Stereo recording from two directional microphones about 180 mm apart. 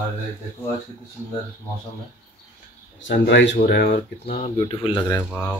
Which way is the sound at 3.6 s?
60° left (ahead or behind).